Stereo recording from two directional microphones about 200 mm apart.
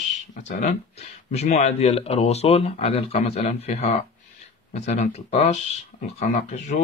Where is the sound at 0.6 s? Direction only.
35° left (ahead or behind).